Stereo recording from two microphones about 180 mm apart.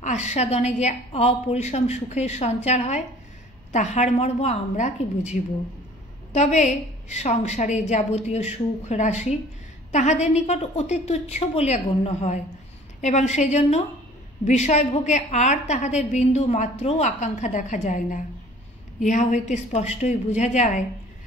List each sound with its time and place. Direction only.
0.0 s a woman's voice: 40° left (ahead or behind)